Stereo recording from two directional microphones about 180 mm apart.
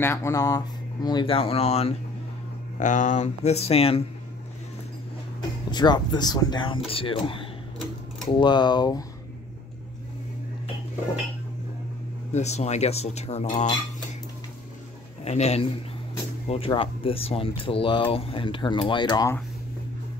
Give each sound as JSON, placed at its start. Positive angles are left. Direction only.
{"t": 0.0, "sound": "speech", "side_deg": 15}
{"t": 5.7, "sound": "speech", "side_deg": 25}
{"t": 12.3, "sound": "speech", "side_deg": 40}
{"t": 15.2, "sound": "speech", "side_deg": 40}